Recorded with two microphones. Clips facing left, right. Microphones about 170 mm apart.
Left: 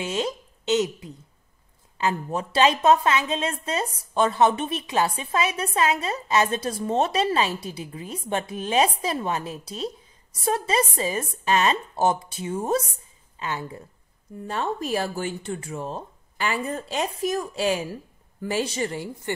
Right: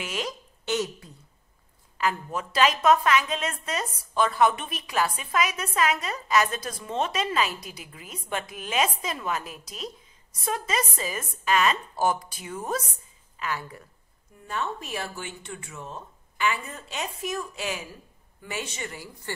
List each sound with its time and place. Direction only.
0.0 s speech: 25° left (ahead or behind)
2.0 s a woman's voice: 25° left (ahead or behind)
19.3 s a woman's voice: 20° left (ahead or behind)